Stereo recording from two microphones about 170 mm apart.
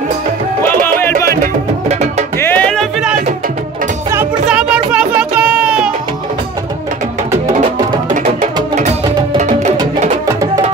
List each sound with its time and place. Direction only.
0.7 s music: 10° left (ahead or behind)
1.4 s music: 45° right (ahead or behind)
2.3 s music: 10° left (ahead or behind); by 5.9 s 5° right (ahead or behind)
8.1 s music: 50° right (ahead or behind)
10.2 s music: 20° right (ahead or behind)